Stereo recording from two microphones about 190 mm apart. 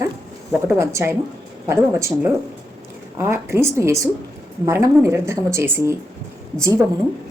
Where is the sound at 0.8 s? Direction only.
15° right (ahead or behind).